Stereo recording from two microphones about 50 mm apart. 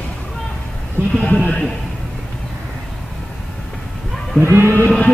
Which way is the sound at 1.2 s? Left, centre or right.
Left.